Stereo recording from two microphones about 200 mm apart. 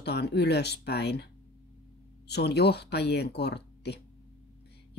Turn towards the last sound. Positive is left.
turn(degrees=55)  # may be behind; listen again after turning